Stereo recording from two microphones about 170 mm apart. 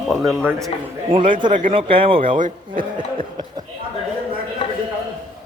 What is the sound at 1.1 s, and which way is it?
A man's voice, 30° right (ahead or behind).